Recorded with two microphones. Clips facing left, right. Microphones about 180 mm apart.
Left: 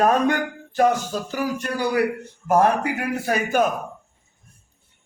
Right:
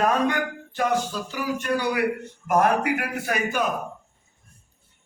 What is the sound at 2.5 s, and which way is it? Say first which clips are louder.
Speech: left 2 dB; 30° left (ahead or behind).